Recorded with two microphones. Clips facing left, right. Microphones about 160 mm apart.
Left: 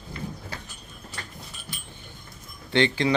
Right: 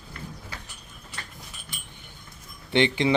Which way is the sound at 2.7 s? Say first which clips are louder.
Even; 20° right (ahead or behind).